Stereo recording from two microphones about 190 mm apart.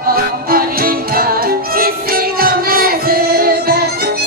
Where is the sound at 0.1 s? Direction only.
50° right (ahead or behind).